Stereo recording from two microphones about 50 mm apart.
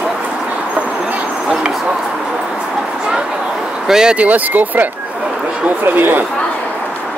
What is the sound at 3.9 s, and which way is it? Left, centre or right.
Speech, centre.